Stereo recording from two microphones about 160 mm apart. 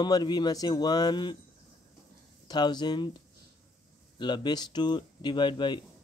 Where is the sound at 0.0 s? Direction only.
25° left (ahead or behind).